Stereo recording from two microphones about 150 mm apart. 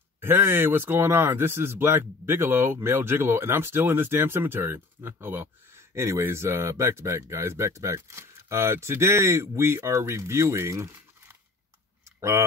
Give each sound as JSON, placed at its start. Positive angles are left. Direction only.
{"t": 0.2, "sound": "speech", "side_deg": -15}